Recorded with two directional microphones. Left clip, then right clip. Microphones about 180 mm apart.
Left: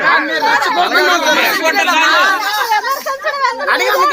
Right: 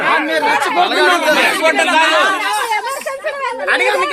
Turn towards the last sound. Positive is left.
turn(degrees=5)  # may be behind; listen again after turning